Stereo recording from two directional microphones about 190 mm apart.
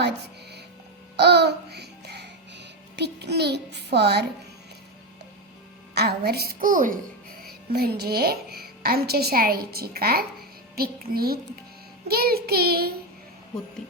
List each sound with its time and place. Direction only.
1.1 s babbling: 60° right (ahead or behind)
5.9 s a child's voice: 55° right (ahead or behind)
12.0 s child singing: 55° right (ahead or behind)